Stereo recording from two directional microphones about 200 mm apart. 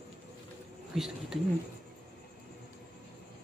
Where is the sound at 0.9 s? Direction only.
Centre (ahead or behind).